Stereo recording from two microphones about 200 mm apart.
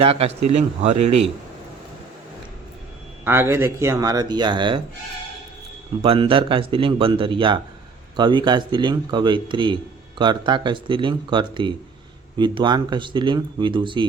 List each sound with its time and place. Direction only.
0.0 s speech: 30° right (ahead or behind)
3.2 s speech: 10° right (ahead or behind)
6.0 s speech: 25° right (ahead or behind)